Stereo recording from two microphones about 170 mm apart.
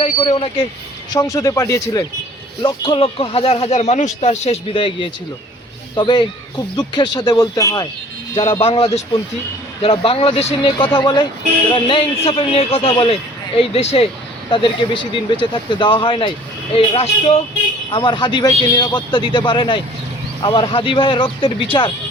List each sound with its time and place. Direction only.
0.2 s speech: 30° left (ahead or behind)
8.4 s speech: 30° left (ahead or behind)